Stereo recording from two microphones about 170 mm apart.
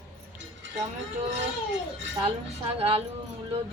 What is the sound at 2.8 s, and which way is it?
Speech, 35° right (ahead or behind).